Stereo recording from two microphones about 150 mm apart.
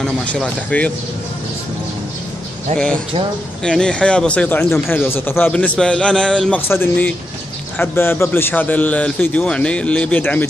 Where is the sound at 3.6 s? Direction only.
5° left (ahead or behind).